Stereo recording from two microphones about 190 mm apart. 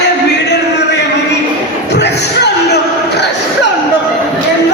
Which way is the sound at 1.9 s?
65° left (ahead or behind).